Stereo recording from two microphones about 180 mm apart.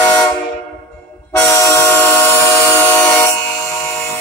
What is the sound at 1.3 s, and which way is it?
Train, 15° left (ahead or behind).